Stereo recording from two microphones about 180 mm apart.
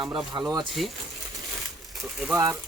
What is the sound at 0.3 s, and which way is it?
Speech, 25° right (ahead or behind).